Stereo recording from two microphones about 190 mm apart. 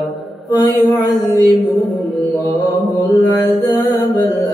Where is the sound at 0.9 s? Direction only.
20° left (ahead or behind).